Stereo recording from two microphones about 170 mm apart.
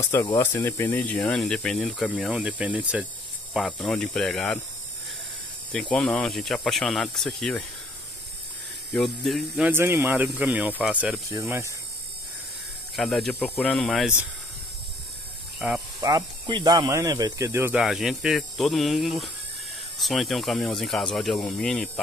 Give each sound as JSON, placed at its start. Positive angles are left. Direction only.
{"t": 0.3, "sound": "speech", "side_deg": 10}
{"t": 5.7, "sound": "speech", "side_deg": 0}
{"t": 8.9, "sound": "speech", "side_deg": 0}
{"t": 9.6, "sound": "speech", "side_deg": -15}
{"t": 11.3, "sound": "speech", "side_deg": -15}
{"t": 12.9, "sound": "speech", "side_deg": 0}
{"t": 15.6, "sound": "speech", "side_deg": -5}
{"t": 16.0, "sound": "speech", "side_deg": -25}
{"t": 17.8, "sound": "speech", "side_deg": 0}